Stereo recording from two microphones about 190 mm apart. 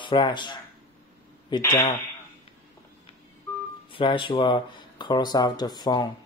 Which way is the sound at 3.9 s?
25° left (ahead or behind).